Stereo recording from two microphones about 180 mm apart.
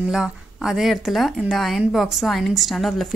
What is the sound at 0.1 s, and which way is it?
Speech, centre (ahead or behind).